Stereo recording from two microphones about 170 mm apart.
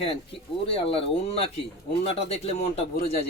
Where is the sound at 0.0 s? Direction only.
35° left (ahead or behind).